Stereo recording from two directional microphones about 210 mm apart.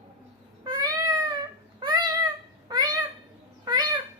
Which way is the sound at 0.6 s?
20° right (ahead or behind).